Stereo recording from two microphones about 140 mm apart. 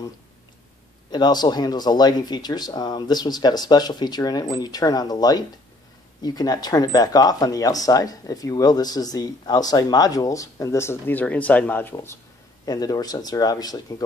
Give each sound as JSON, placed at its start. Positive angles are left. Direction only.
{"t": 1.1, "sound": "speech", "side_deg": 30}
{"t": 12.6, "sound": "speech", "side_deg": 30}